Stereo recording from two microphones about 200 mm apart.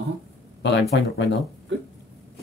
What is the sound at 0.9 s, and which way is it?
Speech, 60° left (ahead or behind).